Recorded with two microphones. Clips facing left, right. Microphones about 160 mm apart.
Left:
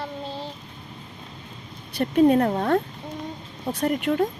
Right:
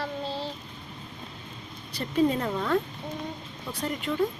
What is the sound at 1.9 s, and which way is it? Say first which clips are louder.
Speech: left 7 dB; 60° left (ahead or behind).